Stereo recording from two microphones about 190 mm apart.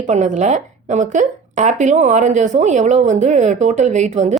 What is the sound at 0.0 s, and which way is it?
A woman's voice, 40° right (ahead or behind).